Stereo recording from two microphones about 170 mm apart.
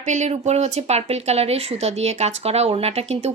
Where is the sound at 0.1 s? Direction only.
40° right (ahead or behind).